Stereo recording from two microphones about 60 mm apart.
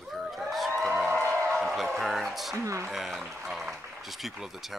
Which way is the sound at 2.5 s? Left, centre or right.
Right.